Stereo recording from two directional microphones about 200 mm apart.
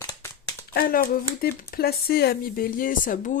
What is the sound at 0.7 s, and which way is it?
A child's voice, 45° left (ahead or behind).